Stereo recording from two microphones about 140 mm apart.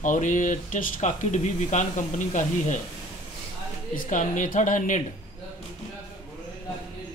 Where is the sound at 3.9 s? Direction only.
65° left (ahead or behind).